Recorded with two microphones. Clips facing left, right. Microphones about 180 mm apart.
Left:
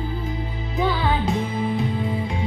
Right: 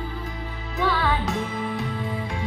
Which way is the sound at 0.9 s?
25° left (ahead or behind).